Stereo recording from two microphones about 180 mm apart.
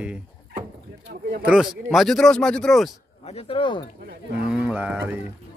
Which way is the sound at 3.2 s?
30° left (ahead or behind).